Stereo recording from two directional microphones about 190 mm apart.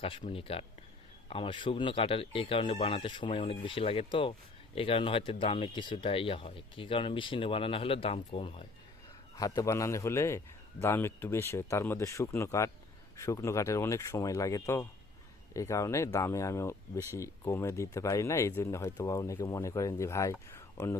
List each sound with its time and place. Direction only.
0.2 s speech: 30° left (ahead or behind)
9.3 s speech: 20° left (ahead or behind)